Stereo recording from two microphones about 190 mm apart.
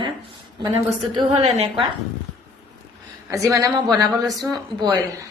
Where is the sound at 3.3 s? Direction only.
15° right (ahead or behind).